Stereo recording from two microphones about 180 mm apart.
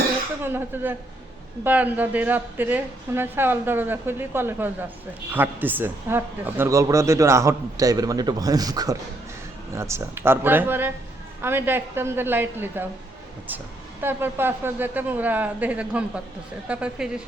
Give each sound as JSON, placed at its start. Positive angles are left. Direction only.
{"t": 0.4, "sound": "a man's voice", "side_deg": -10}
{"t": 14.0, "sound": "a man's voice", "side_deg": -10}